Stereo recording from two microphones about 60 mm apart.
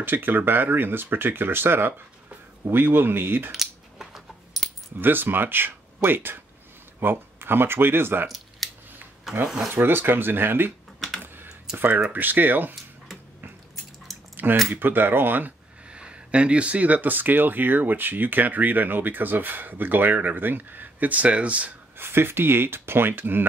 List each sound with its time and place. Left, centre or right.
0.0 s speech: right
3.5 s a sound: centre
5.0 s speech: right
8.6 s scissors: centre
9.3 s rub: centre
9.7 s speech: right
11.7 s speech: right
14.3 s a sound: right
14.7 s speech: right
15.9 s speech: centre
21.9 s speech: right